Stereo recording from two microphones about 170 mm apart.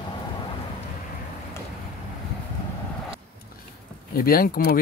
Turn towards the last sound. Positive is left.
turn(degrees=60)  # may be behind; listen again after turning